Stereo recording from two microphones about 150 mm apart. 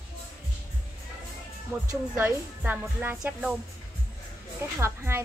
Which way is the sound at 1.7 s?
20° right (ahead or behind).